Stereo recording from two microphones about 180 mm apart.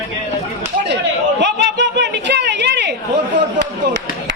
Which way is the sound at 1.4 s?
75° right (ahead or behind).